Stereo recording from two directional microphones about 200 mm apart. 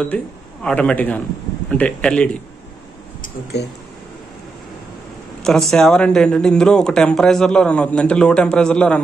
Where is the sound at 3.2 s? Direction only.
55° left (ahead or behind).